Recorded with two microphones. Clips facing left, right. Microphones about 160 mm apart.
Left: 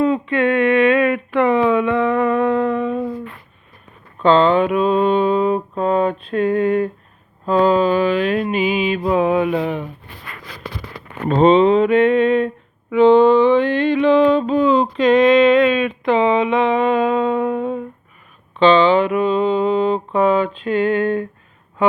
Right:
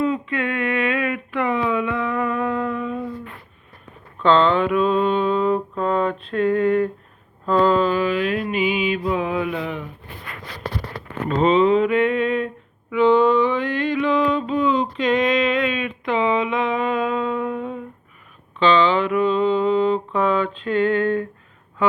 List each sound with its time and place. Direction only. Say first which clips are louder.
0.0 s a sound: left 6 dB; 30° left (ahead or behind)
1.9 s a sound: left 7 dB; 70° left (ahead or behind)
2.1 s humming: left 6 dB; 30° left (ahead or behind)
2.7 s humming: left 6 dB; 60° left (ahead or behind)
4.2 s speech: left 3 dB; 10° left (ahead or behind)
5.8 s a sound: left 5 dB; 15° left (ahead or behind)
6.3 s speech: left 1 dB; 20° left (ahead or behind)
7.4 s mantra: left 3 dB; 10° left (ahead or behind)
7.9 s mantra: left 4 dB; 30° left (ahead or behind)
11.3 s a sound: left 4 dB; 30° left (ahead or behind)
12.9 s mantra: left 5 dB; 30° left (ahead or behind)
18.6 s mantra: left 5 dB; 20° left (ahead or behind)